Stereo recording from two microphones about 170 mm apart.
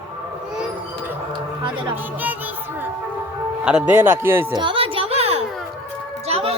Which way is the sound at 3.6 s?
10° right (ahead or behind).